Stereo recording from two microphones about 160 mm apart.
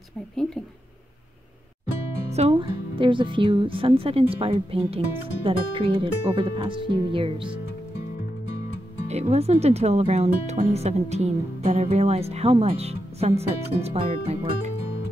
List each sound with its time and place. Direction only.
2.3 s speech: 35° right (ahead or behind)
9.0 s speech: 45° right (ahead or behind)